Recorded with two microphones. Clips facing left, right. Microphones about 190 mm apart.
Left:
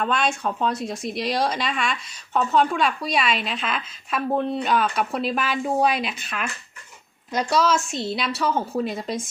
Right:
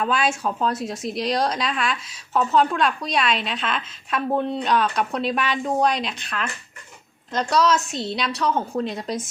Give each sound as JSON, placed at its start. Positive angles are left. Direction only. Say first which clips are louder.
{"t": 0.0, "sound": "a woman's voice", "louder": "right 1 dB", "side_deg": -5}